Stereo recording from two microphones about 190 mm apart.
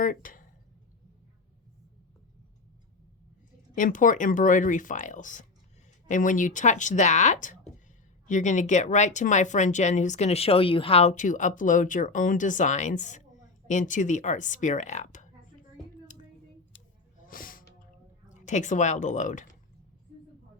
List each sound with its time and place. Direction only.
0.0 s speech: 45° left (ahead or behind)
3.8 s speech: 45° left (ahead or behind)
17.2 s a sound: 45° left (ahead or behind)
18.3 s speech: 40° left (ahead or behind)